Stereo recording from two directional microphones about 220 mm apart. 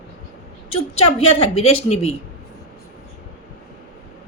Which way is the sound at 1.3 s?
25° left (ahead or behind).